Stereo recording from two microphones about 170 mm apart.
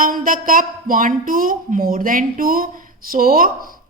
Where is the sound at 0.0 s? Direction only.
55° right (ahead or behind).